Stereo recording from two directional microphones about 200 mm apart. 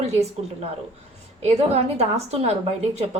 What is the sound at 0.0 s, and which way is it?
Speech, 30° right (ahead or behind).